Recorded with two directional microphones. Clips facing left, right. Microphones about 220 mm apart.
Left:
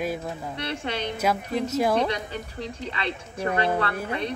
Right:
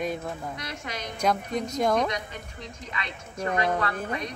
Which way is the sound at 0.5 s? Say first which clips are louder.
Left 6 dB; 30° left (ahead or behind).